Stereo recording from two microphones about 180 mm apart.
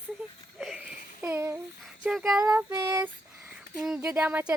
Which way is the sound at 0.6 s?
Centre (ahead or behind).